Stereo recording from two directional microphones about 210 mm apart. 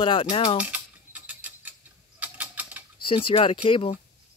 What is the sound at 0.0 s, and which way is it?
Speech, 25° left (ahead or behind).